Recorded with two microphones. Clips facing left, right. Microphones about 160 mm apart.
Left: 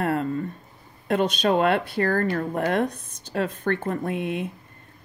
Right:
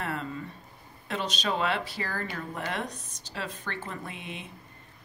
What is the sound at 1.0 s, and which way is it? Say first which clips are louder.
Speech: left 10 dB; 55° left (ahead or behind).